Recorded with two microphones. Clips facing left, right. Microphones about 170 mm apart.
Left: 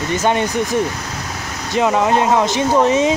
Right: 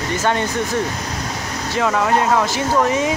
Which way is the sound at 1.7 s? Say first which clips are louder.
Left 3 dB; 20° left (ahead or behind).